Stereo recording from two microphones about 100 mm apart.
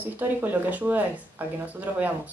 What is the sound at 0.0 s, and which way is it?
A woman's voice, 20° right (ahead or behind).